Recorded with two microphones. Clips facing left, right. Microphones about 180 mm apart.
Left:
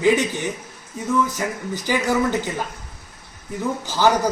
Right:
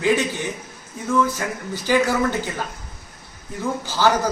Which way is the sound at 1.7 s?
15° left (ahead or behind).